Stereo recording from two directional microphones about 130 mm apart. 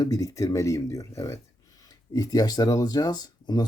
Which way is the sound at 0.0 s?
25° left (ahead or behind).